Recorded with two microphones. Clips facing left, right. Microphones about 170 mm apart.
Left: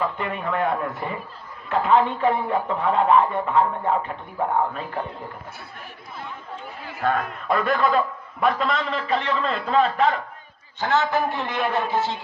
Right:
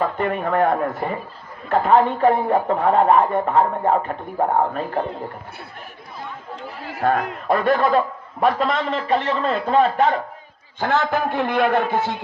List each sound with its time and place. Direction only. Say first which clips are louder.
0.0 s speech: right 5 dB; 45° right (ahead or behind)
7.0 s a man's voice: right 3 dB; 40° right (ahead or behind)
10.8 s a man's voice: right 1 dB; 55° right (ahead or behind)